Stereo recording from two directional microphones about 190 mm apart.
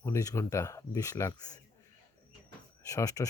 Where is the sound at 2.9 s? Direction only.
15° left (ahead or behind).